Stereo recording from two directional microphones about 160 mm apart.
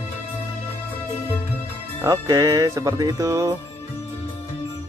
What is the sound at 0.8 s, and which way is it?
Music, 15° left (ahead or behind).